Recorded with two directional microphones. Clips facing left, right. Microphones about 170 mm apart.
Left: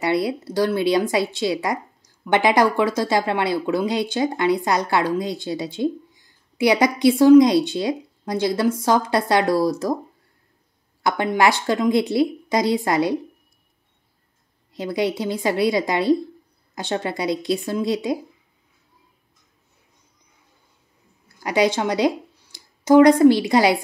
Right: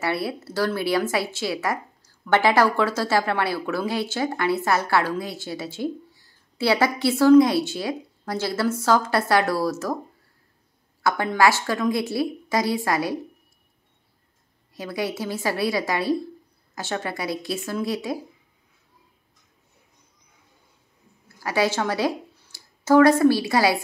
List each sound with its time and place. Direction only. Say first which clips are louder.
0.0 s a woman's voice: left 5 dB; 20° left (ahead or behind)
11.0 s speech: left 1 dB; 20° left (ahead or behind)
14.7 s speech: left 5 dB; 20° left (ahead or behind)
21.4 s a woman's voice: left 3 dB; 20° left (ahead or behind)